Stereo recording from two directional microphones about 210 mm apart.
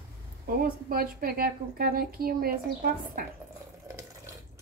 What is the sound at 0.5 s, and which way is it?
A woman's voice, 45° right (ahead or behind).